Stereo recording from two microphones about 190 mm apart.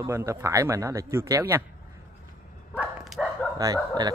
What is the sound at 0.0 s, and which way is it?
Speech, 15° right (ahead or behind).